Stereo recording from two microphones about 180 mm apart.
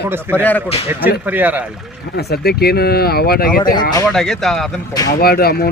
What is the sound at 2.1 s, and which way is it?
Speech, 60° left (ahead or behind).